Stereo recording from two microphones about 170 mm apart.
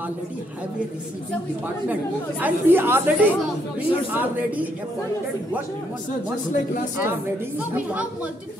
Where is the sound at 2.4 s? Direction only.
10° right (ahead or behind).